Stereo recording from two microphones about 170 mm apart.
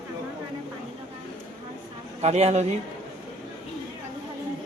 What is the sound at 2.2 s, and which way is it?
Speech, 40° right (ahead or behind).